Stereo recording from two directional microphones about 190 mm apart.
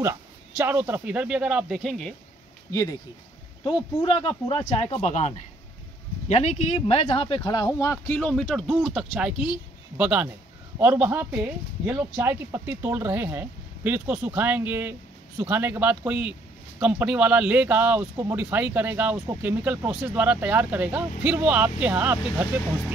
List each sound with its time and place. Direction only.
0.6 s speech: 10° right (ahead or behind)
2.7 s speech: 15° left (ahead or behind)
4.0 s speech: 30° left (ahead or behind); by 22.2 s 10° right (ahead or behind)